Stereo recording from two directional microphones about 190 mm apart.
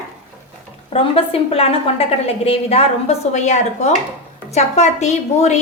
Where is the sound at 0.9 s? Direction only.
30° left (ahead or behind).